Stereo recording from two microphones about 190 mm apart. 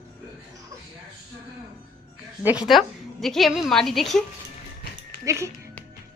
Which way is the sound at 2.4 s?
5° right (ahead or behind).